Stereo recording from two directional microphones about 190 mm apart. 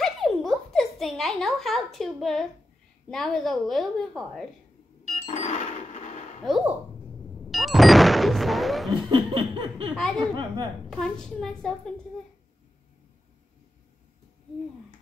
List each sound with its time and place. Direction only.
0.0 s a sound: centre (ahead or behind)
3.1 s a woman's voice: centre (ahead or behind)
5.0 s music: 35° left (ahead or behind)
6.4 s a woman's voice: centre (ahead or behind)
7.4 s music: centre (ahead or behind)
9.1 s laughter: 25° right (ahead or behind)
9.9 s a woman's voice: centre (ahead or behind)
10.3 s a woman's voice: 25° right (ahead or behind)
10.9 s a woman's voice: 5° left (ahead or behind)